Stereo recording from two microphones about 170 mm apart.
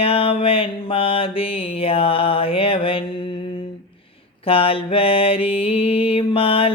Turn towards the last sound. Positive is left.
turn(degrees=35)  # may be behind; listen again after turning